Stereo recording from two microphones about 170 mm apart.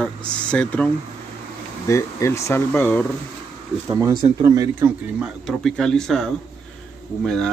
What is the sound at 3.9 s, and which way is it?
Speech, 15° right (ahead or behind).